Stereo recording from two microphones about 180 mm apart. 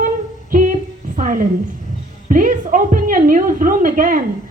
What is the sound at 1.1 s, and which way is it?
A woman's voice, 45° right (ahead or behind).